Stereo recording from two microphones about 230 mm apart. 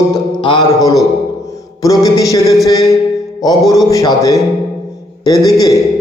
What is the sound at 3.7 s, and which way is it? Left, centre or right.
A man's voice, centre.